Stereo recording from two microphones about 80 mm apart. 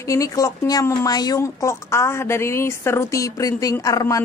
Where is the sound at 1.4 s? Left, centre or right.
Left.